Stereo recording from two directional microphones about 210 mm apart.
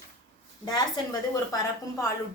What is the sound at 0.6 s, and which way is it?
A woman's voice, 20° left (ahead or behind).